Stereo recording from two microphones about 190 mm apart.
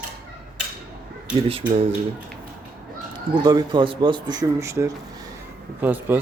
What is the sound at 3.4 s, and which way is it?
Speech, 20° right (ahead or behind).